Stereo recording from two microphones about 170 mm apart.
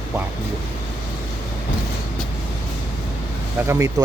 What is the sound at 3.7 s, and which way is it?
Speech, 20° right (ahead or behind).